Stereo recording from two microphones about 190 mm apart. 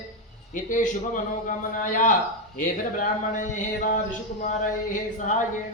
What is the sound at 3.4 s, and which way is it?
Speech, 40° left (ahead or behind).